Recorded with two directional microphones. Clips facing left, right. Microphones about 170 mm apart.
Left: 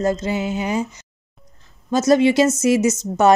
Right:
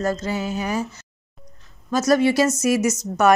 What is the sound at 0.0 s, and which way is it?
A woman's voice, 20° left (ahead or behind).